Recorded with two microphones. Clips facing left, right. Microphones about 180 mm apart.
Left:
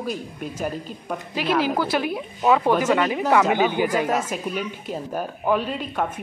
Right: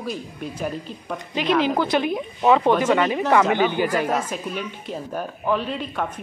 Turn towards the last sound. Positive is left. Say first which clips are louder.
# left 1 dB
turn(degrees=5)  # may be behind; listen again after turning